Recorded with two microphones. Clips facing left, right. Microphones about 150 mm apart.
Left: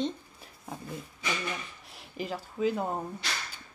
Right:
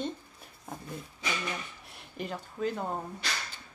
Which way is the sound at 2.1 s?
5° left (ahead or behind).